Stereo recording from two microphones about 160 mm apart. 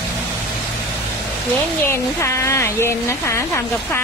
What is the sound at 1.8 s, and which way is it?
Speech, 15° left (ahead or behind).